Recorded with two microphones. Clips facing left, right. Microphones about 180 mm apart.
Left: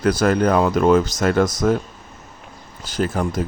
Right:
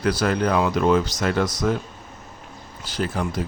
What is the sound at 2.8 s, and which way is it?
Speech, 45° left (ahead or behind).